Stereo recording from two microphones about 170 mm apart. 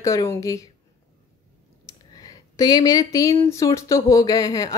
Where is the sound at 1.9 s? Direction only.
20° left (ahead or behind).